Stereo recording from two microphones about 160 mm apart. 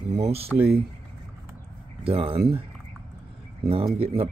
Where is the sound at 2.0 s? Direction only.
35° right (ahead or behind).